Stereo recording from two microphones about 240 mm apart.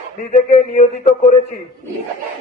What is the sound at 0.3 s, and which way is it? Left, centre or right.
Speech, left.